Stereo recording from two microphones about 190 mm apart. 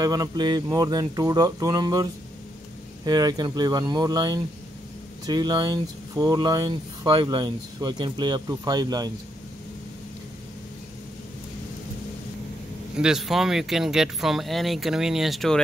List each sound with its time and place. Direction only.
0.0 s speech: 20° right (ahead or behind)
3.1 s speech: 20° right (ahead or behind)
12.9 s speech: 5° right (ahead or behind)